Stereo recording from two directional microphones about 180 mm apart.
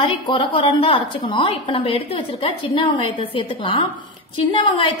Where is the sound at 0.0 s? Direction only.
30° left (ahead or behind).